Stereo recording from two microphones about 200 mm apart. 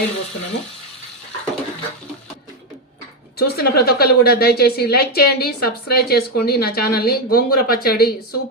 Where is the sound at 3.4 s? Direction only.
50° left (ahead or behind).